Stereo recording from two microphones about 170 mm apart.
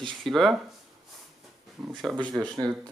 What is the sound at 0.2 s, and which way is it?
Speech, centre (ahead or behind).